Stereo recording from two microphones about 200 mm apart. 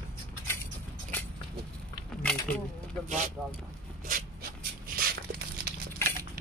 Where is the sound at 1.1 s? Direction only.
10° left (ahead or behind).